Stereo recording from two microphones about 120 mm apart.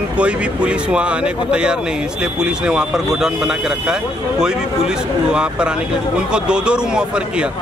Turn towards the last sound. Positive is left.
turn(degrees=-10)  # may be behind; listen again after turning